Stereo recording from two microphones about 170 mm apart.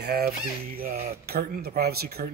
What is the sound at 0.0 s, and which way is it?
Speech, 65° right (ahead or behind).